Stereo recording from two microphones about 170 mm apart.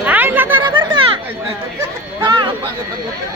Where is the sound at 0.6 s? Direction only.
25° right (ahead or behind).